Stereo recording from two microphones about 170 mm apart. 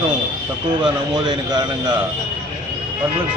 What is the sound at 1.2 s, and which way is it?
Speech, 25° right (ahead or behind).